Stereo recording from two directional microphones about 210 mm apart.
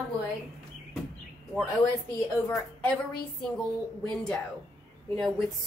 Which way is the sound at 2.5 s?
5° left (ahead or behind).